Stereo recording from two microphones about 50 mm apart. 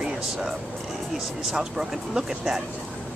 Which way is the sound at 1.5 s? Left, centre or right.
Centre.